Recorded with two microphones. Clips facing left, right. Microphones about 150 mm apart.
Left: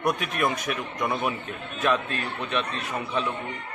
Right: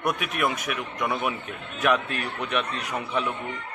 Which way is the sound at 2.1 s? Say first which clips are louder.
Right 1 dB; 15° right (ahead or behind).